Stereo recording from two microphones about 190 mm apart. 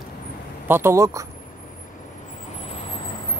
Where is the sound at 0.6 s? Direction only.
10° right (ahead or behind).